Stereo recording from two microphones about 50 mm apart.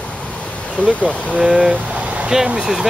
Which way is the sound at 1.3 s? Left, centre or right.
Centre.